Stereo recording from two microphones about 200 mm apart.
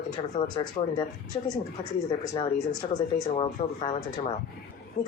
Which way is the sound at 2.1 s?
20° left (ahead or behind).